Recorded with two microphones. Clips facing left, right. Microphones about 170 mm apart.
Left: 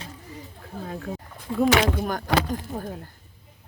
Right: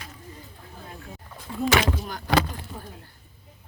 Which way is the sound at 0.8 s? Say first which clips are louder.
Left 10 dB; 75° left (ahead or behind).